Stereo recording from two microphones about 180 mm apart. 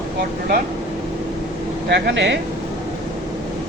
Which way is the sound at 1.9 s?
70° right (ahead or behind).